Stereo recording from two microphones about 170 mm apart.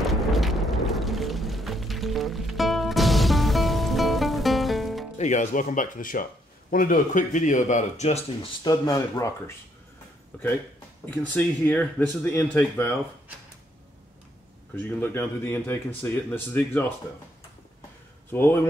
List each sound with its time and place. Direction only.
0.0 s music: centre (ahead or behind)
5.1 s speech: 45° left (ahead or behind)
8.6 s speech: 20° left (ahead or behind)
11.2 s speech: 10° left (ahead or behind)
14.8 s speech: 10° left (ahead or behind)
18.3 s speech: 15° left (ahead or behind)